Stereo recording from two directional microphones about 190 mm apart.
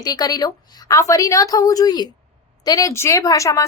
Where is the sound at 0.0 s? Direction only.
20° left (ahead or behind).